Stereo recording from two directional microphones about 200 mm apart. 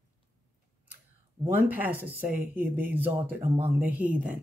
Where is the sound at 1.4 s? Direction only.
10° right (ahead or behind).